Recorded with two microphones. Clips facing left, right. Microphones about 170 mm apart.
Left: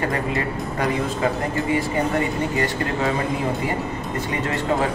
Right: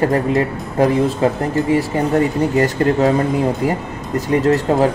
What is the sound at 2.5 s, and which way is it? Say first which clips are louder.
A man's voice: right 8 dB; 45° right (ahead or behind).